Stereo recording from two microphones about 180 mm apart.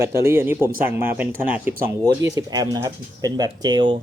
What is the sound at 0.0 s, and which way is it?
Speech, 15° right (ahead or behind).